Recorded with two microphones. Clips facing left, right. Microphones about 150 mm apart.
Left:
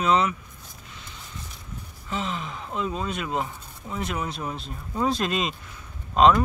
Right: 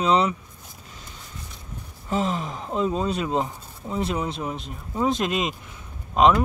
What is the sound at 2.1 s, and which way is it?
Speech, 40° right (ahead or behind).